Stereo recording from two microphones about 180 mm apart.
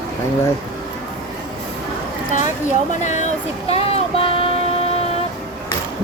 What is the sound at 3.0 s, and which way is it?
Speech, 40° left (ahead or behind).